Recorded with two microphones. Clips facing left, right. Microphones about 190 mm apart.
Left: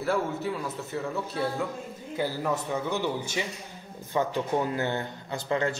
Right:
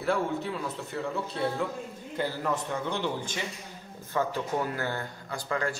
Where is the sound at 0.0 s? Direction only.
5° left (ahead or behind).